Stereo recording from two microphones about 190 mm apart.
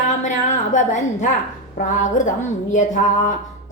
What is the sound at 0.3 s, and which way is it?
A woman's voice, 40° left (ahead or behind).